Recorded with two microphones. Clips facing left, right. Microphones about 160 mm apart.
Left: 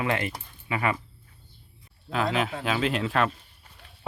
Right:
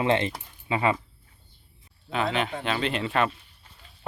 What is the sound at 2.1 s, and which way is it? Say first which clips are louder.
Speech: even; centre (ahead or behind).